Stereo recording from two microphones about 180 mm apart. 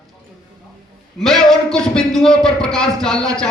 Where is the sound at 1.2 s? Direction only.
Centre (ahead or behind).